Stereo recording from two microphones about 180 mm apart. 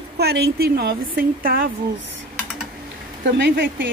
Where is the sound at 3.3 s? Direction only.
75° right (ahead or behind).